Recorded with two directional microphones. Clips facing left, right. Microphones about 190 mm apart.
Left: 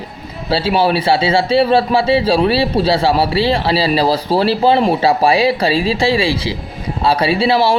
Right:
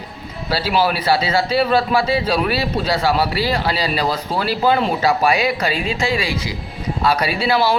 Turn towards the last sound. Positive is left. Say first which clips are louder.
# left 4 dB
turn(degrees=25)  # may be behind; listen again after turning